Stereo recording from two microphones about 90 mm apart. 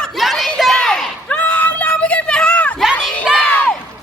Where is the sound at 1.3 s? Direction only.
15° left (ahead or behind).